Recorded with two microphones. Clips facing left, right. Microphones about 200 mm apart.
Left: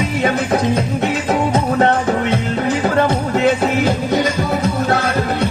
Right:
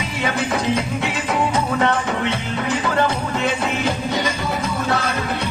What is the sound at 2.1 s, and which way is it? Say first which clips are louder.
Music: left 5 dB; 45° left (ahead or behind).